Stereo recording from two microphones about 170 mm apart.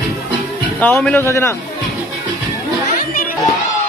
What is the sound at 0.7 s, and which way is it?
Speech, 5° left (ahead or behind).